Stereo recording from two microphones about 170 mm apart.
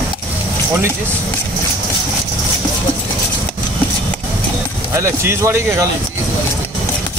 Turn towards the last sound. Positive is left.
turn(degrees=-15)  # may be behind; listen again after turning